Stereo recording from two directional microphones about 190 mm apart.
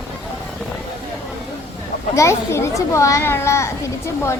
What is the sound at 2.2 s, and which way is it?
A child's voice, 15° left (ahead or behind).